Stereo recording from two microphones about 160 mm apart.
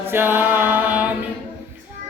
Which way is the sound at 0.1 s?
15° right (ahead or behind).